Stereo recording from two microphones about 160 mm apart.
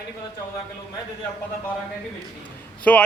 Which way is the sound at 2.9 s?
10° left (ahead or behind).